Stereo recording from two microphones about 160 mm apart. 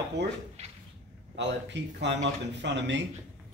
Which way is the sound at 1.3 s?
90° right.